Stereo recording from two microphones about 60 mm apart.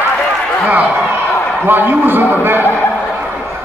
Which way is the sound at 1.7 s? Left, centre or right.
Right.